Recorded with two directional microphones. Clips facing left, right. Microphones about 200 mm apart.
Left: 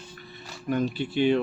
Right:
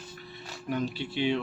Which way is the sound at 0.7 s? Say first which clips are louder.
Left 5 dB; 50° left (ahead or behind).